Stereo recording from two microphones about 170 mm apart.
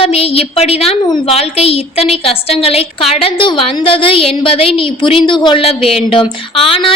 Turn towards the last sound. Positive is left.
turn(degrees=35)  # may be behind; listen again after turning